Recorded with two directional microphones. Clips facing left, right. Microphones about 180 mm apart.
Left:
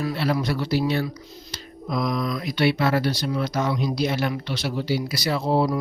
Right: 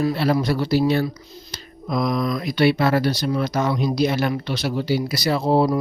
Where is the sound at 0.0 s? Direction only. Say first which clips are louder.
Right 4 dB; 35° right (ahead or behind).